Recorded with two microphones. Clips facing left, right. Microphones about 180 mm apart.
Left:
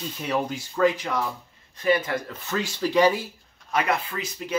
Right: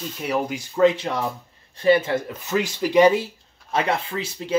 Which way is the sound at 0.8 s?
25° right (ahead or behind).